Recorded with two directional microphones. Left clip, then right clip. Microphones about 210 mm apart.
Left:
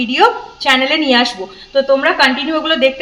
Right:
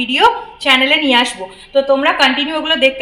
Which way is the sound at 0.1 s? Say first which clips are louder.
Even; 55° left (ahead or behind).